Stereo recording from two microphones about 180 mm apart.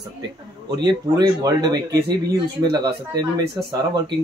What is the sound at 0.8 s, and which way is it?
Speech, 25° right (ahead or behind).